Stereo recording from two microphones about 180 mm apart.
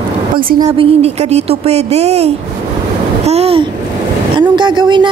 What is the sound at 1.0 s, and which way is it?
A woman's voice, 35° right (ahead or behind).